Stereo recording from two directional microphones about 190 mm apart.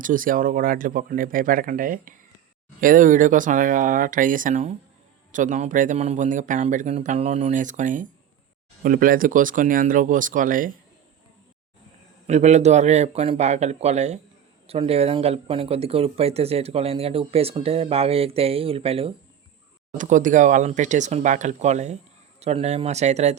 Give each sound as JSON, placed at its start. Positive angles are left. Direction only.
{"t": 0.0, "sound": "speech", "side_deg": -45}
{"t": 12.3, "sound": "speech", "side_deg": -35}
{"t": 20.0, "sound": "speech", "side_deg": -40}